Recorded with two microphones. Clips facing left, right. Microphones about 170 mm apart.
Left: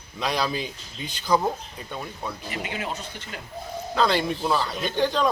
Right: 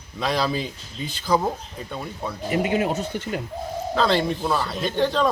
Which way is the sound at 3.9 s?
Centre (ahead or behind).